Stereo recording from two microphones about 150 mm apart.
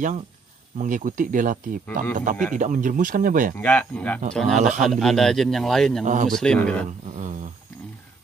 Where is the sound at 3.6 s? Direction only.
5° left (ahead or behind).